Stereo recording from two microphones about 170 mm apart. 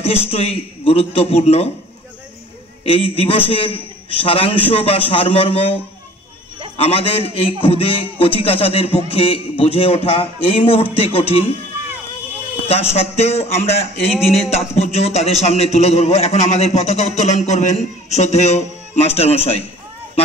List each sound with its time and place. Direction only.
0.0 s a man's voice: 35° left (ahead or behind)
2.8 s a man's voice: 35° left (ahead or behind)
6.8 s a man's voice: 35° left (ahead or behind)
12.6 s a man's voice: 35° left (ahead or behind)